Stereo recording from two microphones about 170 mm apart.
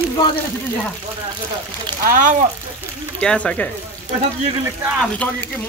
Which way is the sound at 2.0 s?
50° right (ahead or behind).